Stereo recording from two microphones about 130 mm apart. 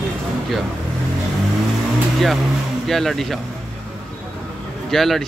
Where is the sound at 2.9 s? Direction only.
Centre (ahead or behind).